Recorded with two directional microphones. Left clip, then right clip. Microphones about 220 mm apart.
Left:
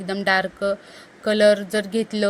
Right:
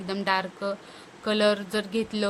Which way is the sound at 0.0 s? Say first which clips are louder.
Left 6 dB; 15° left (ahead or behind).